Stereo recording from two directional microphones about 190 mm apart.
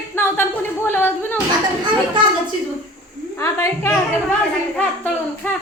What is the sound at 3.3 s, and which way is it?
Speech, 15° left (ahead or behind).